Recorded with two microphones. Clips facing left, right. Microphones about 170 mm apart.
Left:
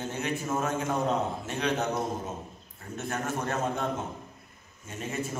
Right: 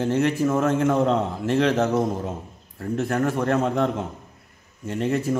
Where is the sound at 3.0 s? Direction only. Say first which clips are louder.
Right 9 dB; 75° right (ahead or behind).